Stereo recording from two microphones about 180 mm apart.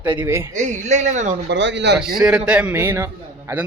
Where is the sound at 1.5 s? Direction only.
80° right.